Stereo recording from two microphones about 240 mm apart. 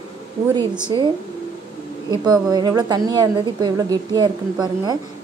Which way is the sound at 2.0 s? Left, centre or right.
Centre.